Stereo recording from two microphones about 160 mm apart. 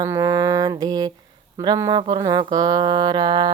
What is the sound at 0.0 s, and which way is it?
Mantra, 15° right (ahead or behind).